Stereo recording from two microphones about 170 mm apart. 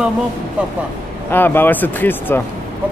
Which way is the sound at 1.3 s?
10° left (ahead or behind).